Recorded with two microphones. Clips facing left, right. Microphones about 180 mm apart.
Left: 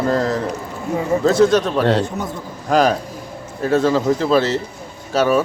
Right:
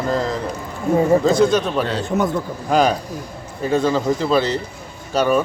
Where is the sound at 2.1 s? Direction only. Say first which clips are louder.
Right 7 dB; 90° right.